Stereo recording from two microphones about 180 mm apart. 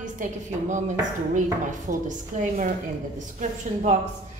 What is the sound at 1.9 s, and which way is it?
Speech, 45° right (ahead or behind).